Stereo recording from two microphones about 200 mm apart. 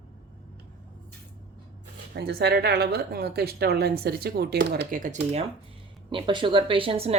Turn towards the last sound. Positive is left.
turn(degrees=-30)  # may be behind; listen again after turning